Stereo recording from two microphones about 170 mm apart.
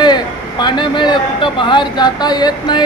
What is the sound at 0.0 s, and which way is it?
A man's voice, 25° left (ahead or behind).